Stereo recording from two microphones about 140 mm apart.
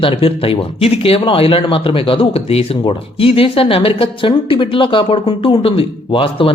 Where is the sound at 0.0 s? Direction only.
40° left (ahead or behind).